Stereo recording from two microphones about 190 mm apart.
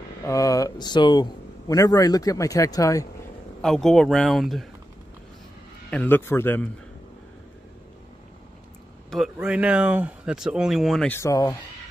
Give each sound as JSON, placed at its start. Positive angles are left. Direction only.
{"t": 0.2, "sound": "speech", "side_deg": 15}
{"t": 3.6, "sound": "speech", "side_deg": 0}
{"t": 5.9, "sound": "a man's voice", "side_deg": 10}
{"t": 9.1, "sound": "speech", "side_deg": -5}
{"t": 11.1, "sound": "a man's voice", "side_deg": 15}